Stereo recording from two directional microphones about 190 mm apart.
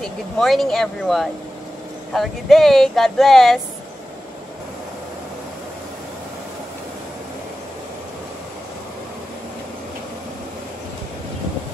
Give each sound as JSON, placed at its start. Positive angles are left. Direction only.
{"t": 0.0, "sound": "speech", "side_deg": 0}